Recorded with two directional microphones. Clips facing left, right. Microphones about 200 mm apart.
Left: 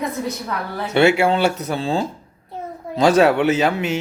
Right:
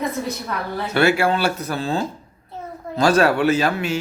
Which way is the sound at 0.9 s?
25° left (ahead or behind).